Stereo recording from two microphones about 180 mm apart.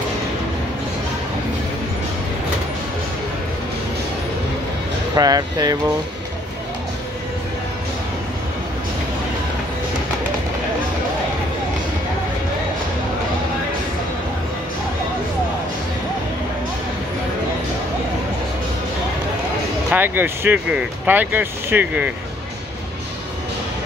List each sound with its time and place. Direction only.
5.1 s speech: 20° right (ahead or behind)
19.9 s speech: 10° right (ahead or behind)